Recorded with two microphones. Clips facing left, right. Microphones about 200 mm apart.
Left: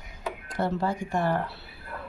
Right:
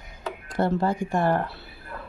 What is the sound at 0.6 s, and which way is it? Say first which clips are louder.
Speech: right 4 dB; 50° right (ahead or behind).